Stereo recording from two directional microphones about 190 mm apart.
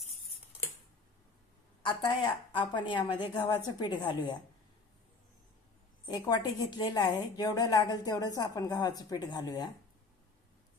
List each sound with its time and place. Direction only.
1.8 s a woman's voice: 25° left (ahead or behind)
6.1 s a woman's voice: 20° left (ahead or behind)